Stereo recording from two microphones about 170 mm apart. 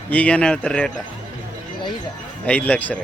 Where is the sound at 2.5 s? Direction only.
10° left (ahead or behind).